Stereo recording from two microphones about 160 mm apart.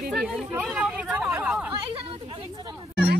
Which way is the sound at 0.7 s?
5° right (ahead or behind).